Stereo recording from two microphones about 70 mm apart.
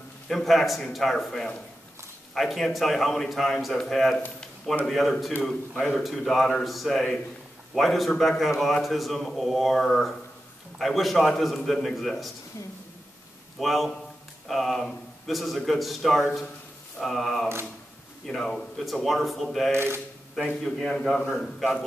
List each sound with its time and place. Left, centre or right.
0.3 s a man's voice: centre
12.6 s a woman's voice: left
13.6 s a man's voice: centre
19.7 s speech: right
20.4 s a man's voice: centre